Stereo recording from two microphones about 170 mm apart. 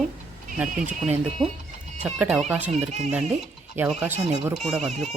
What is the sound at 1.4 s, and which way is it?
Speech, 5° left (ahead or behind).